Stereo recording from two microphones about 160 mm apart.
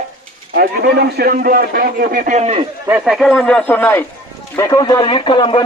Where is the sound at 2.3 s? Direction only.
40° right (ahead or behind).